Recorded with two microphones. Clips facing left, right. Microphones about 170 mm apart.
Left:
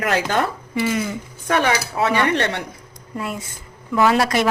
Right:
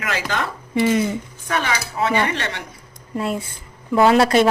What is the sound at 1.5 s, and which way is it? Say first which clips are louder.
Speech: left 4 dB; 60° left (ahead or behind).